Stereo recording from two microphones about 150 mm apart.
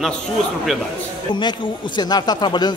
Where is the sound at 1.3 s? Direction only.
30° left (ahead or behind).